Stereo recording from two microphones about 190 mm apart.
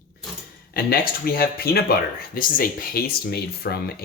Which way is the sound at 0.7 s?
55° left (ahead or behind).